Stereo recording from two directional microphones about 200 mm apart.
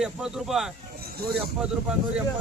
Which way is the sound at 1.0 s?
50° right (ahead or behind).